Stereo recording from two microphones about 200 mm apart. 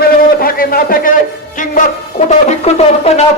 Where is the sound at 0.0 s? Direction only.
45° left (ahead or behind).